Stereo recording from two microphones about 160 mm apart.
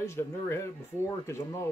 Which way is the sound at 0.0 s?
15° left (ahead or behind).